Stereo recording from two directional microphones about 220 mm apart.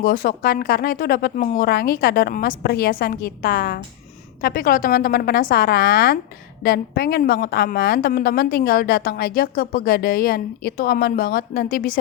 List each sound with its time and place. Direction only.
0.0 s a woman's voice: 40° left (ahead or behind)